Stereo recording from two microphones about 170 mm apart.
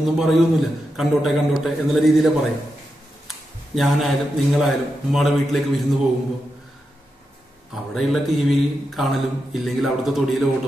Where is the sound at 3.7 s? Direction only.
Centre (ahead or behind).